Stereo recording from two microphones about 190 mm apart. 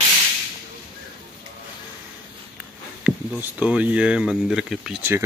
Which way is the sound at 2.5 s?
5° right (ahead or behind).